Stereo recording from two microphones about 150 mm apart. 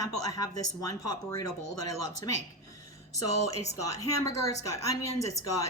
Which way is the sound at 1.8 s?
45° right (ahead or behind).